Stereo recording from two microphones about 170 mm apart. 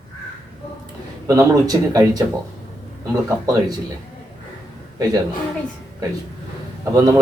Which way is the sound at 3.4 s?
20° right (ahead or behind).